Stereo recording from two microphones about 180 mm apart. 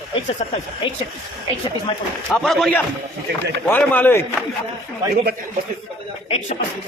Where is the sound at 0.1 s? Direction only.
40° left (ahead or behind).